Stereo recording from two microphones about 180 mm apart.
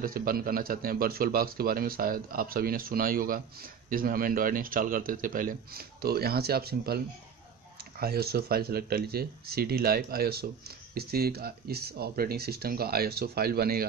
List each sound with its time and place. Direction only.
0.0 s a man's voice: 55° right (ahead or behind)
8.0 s speech: 60° right (ahead or behind)